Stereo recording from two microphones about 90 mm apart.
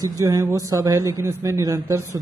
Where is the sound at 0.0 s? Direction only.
35° right (ahead or behind).